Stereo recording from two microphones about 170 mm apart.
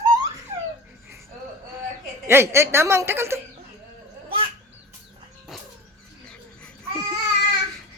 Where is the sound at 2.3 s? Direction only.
15° right (ahead or behind).